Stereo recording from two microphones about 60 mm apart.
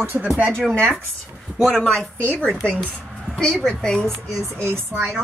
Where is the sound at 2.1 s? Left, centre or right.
Left.